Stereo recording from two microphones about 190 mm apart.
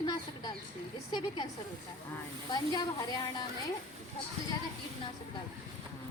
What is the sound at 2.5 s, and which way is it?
Speech, 20° left (ahead or behind).